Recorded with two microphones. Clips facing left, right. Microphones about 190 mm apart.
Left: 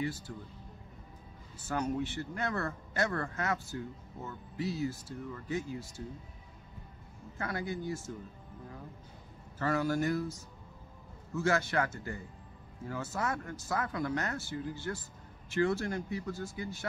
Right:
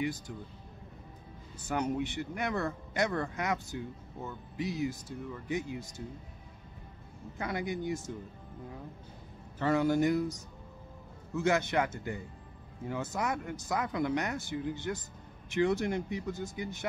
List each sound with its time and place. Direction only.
1.6 s speech: 20° right (ahead or behind)
7.3 s speech: 15° right (ahead or behind)
9.6 s speech: 20° right (ahead or behind)